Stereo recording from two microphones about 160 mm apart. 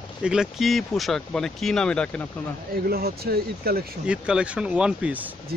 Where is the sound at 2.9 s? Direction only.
70° right (ahead or behind).